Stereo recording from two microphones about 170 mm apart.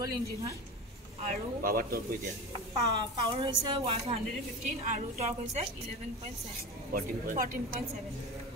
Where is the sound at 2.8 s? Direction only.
25° right (ahead or behind).